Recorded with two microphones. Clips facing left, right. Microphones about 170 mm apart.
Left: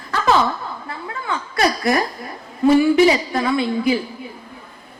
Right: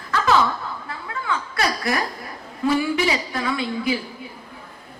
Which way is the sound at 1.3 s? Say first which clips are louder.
Left 4 dB; 30° left (ahead or behind).